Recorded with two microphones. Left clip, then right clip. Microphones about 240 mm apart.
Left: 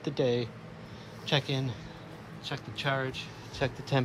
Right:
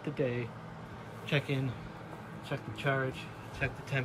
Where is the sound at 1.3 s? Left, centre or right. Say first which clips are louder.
Left 3 dB; centre.